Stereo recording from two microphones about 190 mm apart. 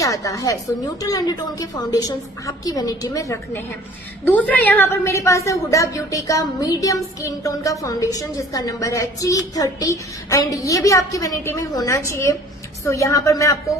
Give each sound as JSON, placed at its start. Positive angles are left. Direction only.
{"t": 0.0, "sound": "a woman's voice", "side_deg": 15}